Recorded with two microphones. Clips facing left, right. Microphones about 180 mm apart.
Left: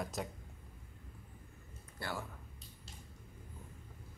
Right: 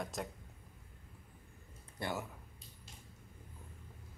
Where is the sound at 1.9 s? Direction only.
20° right (ahead or behind).